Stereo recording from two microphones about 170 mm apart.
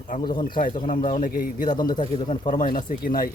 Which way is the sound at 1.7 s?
25° left (ahead or behind).